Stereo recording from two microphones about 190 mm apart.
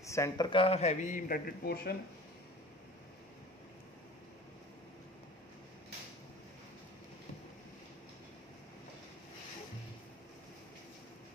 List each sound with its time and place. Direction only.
0.0 s a man's voice: 15° left (ahead or behind); by 2.0 s 55° left (ahead or behind)